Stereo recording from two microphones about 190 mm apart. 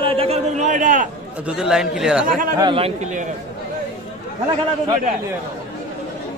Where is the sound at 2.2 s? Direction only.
45° right (ahead or behind).